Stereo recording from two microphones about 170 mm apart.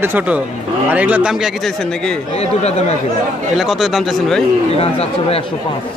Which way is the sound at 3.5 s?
Centre (ahead or behind).